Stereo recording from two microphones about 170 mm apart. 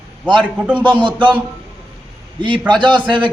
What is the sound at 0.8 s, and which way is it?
Speech, 30° right (ahead or behind).